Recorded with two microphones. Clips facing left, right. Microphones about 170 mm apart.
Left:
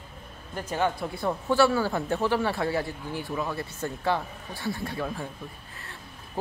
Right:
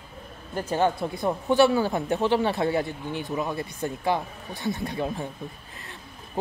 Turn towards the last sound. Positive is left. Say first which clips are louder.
# right 3 dB
turn(degrees=-20)  # may be behind; listen again after turning